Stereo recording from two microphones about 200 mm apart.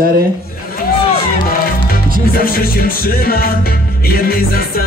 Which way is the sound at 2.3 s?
45° left (ahead or behind).